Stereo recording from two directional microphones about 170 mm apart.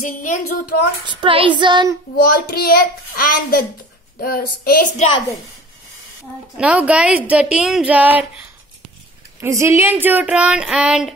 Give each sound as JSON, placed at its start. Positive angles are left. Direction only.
{"t": 0.0, "sound": "speech", "side_deg": 45}
{"t": 1.0, "sound": "child singing", "side_deg": -30}
{"t": 2.2, "sound": "a child's voice", "side_deg": 65}
{"t": 6.5, "sound": "a woman's voice", "side_deg": -5}